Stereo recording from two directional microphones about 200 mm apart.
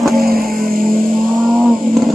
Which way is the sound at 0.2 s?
50° right (ahead or behind).